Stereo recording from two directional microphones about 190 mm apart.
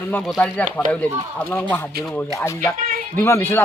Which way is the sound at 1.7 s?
10° left (ahead or behind).